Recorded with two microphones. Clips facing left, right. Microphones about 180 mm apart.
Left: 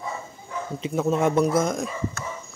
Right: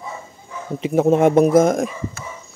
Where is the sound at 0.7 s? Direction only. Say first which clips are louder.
Right 8 dB; 60° right (ahead or behind).